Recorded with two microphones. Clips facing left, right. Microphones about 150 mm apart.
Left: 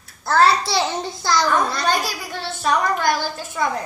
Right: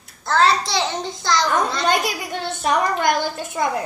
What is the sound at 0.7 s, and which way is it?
Speech, 5° left (ahead or behind).